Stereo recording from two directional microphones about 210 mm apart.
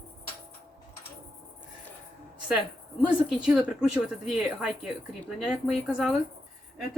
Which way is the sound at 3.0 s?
5° right (ahead or behind).